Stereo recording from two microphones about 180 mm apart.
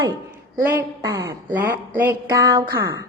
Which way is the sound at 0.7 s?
20° right (ahead or behind).